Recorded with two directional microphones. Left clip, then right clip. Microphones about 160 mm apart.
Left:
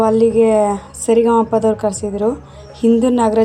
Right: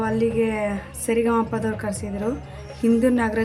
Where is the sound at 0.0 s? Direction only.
25° left (ahead or behind).